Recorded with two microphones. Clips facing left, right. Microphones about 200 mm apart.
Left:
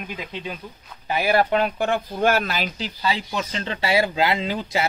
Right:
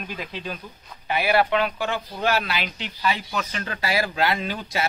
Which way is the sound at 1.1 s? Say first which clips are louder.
Left 1 dB; 45° left (ahead or behind).